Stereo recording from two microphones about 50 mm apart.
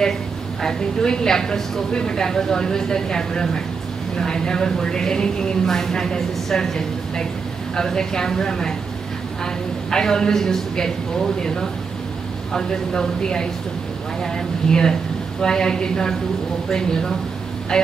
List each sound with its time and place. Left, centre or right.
0.6 s a woman's voice: centre